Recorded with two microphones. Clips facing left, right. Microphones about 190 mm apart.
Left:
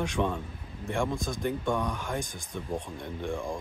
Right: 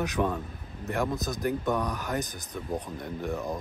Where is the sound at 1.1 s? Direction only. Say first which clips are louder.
Right 1 dB; 25° left (ahead or behind).